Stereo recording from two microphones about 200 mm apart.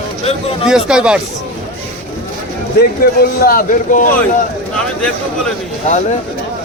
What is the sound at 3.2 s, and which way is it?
Speech, 45° left (ahead or behind).